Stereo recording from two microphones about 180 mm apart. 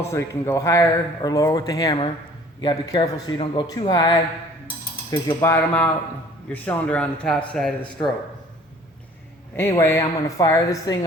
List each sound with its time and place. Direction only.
0.1 s speech: 15° left (ahead or behind)
5.4 s a man's voice: 10° left (ahead or behind)
9.6 s speech: 15° left (ahead or behind)